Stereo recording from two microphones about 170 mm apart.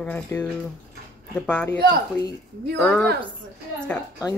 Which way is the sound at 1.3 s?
10° left (ahead or behind).